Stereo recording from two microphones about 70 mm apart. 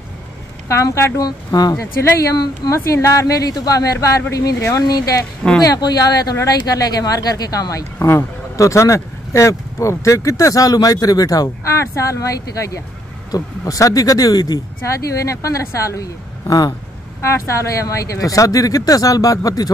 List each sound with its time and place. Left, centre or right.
0.7 s speech: left
1.2 s speech: left
2.3 s speech: left
2.7 s speech: left
17.2 s speech: left